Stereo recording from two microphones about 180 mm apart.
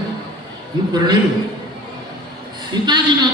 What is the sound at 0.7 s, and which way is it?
Speech, 25° right (ahead or behind).